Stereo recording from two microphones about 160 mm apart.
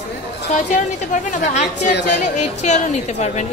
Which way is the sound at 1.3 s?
50° left (ahead or behind).